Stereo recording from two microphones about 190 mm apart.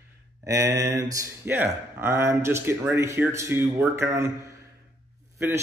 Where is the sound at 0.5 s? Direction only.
15° right (ahead or behind).